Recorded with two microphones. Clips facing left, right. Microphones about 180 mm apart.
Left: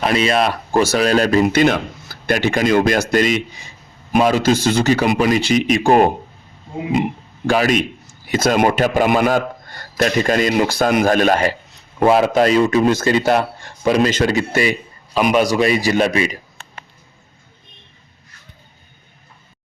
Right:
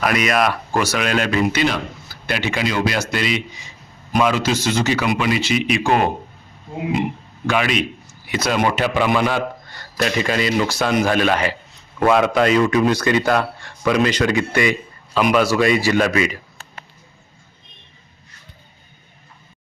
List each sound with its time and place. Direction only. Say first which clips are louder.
0.0 s a man's voice: left 2 dB; 30° left (ahead or behind)
7.4 s speech: left 4 dB; 40° left (ahead or behind)
10.5 s speech: left 3 dB; 55° left (ahead or behind)
11.9 s a man's voice: left 2 dB; 30° left (ahead or behind)
12.9 s a man's voice: left 2 dB; 40° left (ahead or behind)
15.3 s speech: left 1 dB; 20° left (ahead or behind)